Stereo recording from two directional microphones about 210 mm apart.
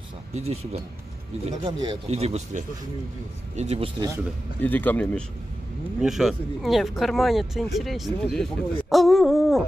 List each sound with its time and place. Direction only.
0.3 s speech: 30° right (ahead or behind)
4.0 s speech: 15° right (ahead or behind)
4.6 s speech: 10° left (ahead or behind)